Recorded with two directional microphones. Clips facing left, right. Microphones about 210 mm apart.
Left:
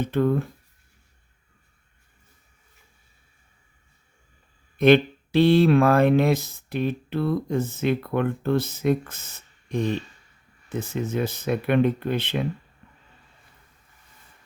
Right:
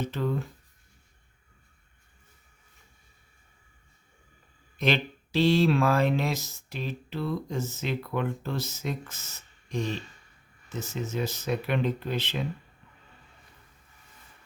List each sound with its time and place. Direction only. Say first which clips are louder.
0.0 s speech: left 8 dB; 55° left (ahead or behind)
4.8 s speech: left 11 dB; 55° left (ahead or behind)